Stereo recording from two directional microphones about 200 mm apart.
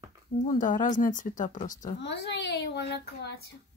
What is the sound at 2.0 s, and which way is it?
Speech, 60° left (ahead or behind).